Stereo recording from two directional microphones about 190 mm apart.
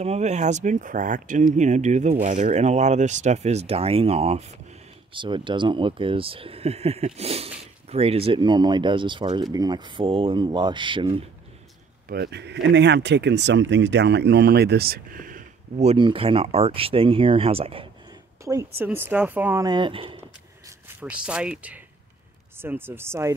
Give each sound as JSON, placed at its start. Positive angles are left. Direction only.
{"t": 0.0, "sound": "speech", "side_deg": -35}
{"t": 12.1, "sound": "speech", "side_deg": -60}
{"t": 18.4, "sound": "speech", "side_deg": -15}
{"t": 19.6, "sound": "speech", "side_deg": -25}
{"t": 20.6, "sound": "speech", "side_deg": -5}